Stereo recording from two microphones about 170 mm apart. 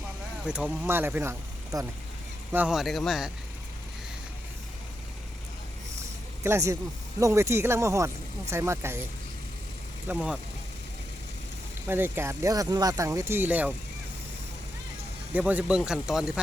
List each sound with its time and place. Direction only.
0.4 s speech: 5° right (ahead or behind)
6.4 s speech: 15° right (ahead or behind)
10.1 s speech: 5° right (ahead or behind)
11.9 s speech: 10° right (ahead or behind)
15.4 s speech: 10° right (ahead or behind)